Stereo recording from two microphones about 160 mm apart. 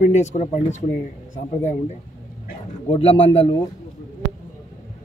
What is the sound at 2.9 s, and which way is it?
Speech, 35° left (ahead or behind).